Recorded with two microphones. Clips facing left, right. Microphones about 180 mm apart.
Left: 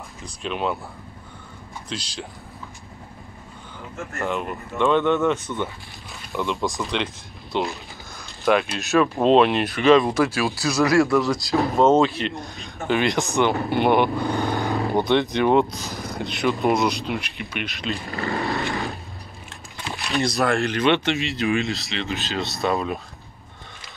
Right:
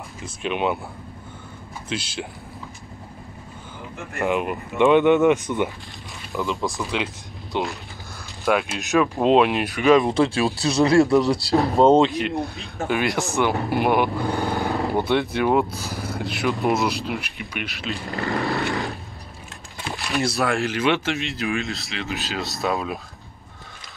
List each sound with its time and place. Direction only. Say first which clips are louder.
0.2 s speech: right 2 dB; 5° right (ahead or behind)
1.9 s speech: right 4 dB; 5° right (ahead or behind)
4.2 s speech: right 4 dB; 10° right (ahead or behind)
6.3 s speech: even; centre (ahead or behind)
7.5 s speech: left 1 dB; 15° right (ahead or behind)
10.1 s speech: right 2 dB; 30° right (ahead or behind)
12.1 s speech: right 4 dB; 10° right (ahead or behind)
14.2 s vehicle: even; 15° left (ahead or behind)
15.0 s speech: left 3 dB; 5° right (ahead or behind)
19.9 s speech: even; centre (ahead or behind)